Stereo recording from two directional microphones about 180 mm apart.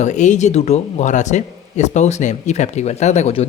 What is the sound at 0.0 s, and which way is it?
Speech, 40° left (ahead or behind).